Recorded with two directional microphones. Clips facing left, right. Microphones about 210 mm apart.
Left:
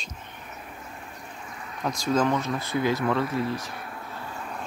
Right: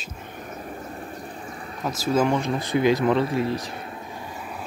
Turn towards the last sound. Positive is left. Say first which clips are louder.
# right 1 dB
turn(degrees=-10)  # may be behind; listen again after turning